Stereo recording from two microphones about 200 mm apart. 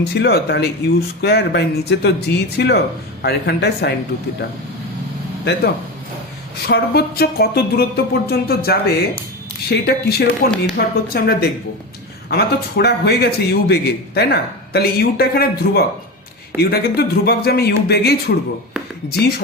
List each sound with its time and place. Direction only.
0.0 s speech: 55° left (ahead or behind)
6.7 s a man's voice: 50° left (ahead or behind)